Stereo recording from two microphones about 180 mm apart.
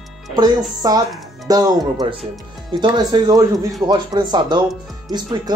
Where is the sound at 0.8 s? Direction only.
20° right (ahead or behind).